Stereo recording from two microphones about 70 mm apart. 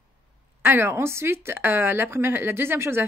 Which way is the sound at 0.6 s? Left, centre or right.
Right.